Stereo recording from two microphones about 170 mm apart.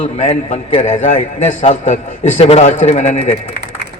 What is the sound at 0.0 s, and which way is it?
A man's voice, 35° left (ahead or behind).